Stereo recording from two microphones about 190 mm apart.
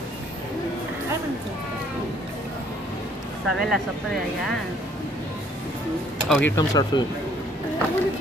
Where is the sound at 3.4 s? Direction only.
Centre (ahead or behind).